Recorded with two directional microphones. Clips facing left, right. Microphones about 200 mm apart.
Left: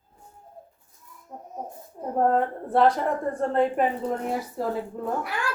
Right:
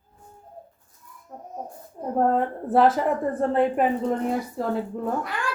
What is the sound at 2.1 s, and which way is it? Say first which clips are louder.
A woman's voice: even; centre (ahead or behind).